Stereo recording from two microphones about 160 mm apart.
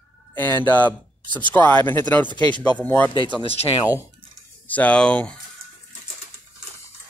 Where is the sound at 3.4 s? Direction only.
35° left (ahead or behind).